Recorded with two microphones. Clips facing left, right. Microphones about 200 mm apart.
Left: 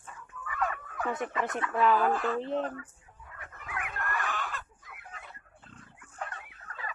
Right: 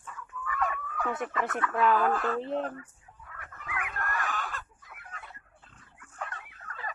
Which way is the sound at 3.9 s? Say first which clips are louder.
Even; 45° right (ahead or behind).